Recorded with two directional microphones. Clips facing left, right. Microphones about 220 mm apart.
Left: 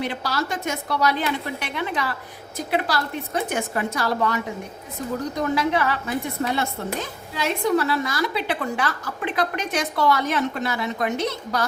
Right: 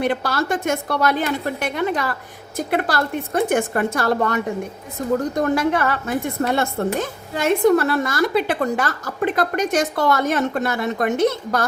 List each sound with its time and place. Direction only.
0.0 s a woman's voice: 55° right (ahead or behind)